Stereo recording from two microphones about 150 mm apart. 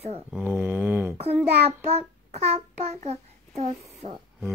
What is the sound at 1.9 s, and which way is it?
Child singing, 45° right (ahead or behind).